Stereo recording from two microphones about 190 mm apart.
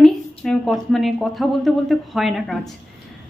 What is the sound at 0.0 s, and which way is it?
A woman's voice, centre (ahead or behind).